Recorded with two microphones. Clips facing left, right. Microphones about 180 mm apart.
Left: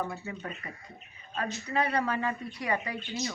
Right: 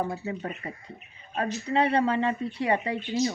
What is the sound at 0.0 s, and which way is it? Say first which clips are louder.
Speech: right 5 dB; 30° right (ahead or behind).